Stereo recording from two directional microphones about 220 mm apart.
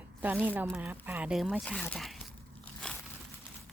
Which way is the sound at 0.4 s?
10° right (ahead or behind).